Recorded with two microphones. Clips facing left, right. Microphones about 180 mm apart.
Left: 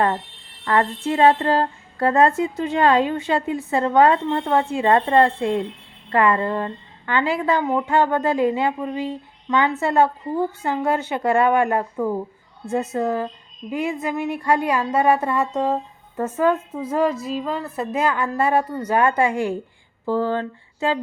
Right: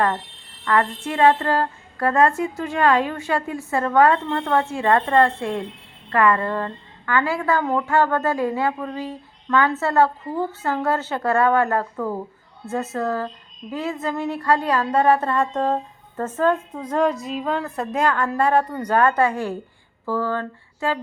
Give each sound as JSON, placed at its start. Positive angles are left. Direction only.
{"t": 0.6, "sound": "a woman's voice", "side_deg": 25}